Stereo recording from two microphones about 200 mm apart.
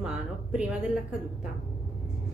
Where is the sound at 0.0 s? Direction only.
5° right (ahead or behind).